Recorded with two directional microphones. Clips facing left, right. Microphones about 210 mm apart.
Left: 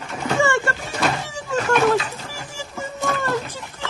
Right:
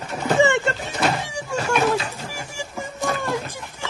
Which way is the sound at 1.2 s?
10° right (ahead or behind).